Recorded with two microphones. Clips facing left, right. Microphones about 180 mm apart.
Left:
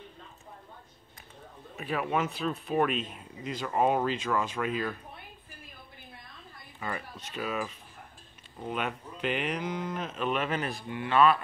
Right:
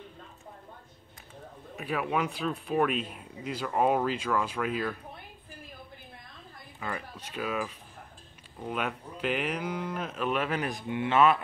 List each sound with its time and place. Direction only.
1.8 s speech: 5° right (ahead or behind)
7.2 s speech: 10° right (ahead or behind)
10.7 s speech: 20° right (ahead or behind)